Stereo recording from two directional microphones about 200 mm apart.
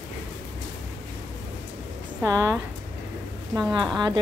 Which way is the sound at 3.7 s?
20° right (ahead or behind).